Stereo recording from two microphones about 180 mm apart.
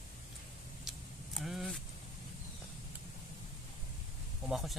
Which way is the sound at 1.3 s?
Centre (ahead or behind).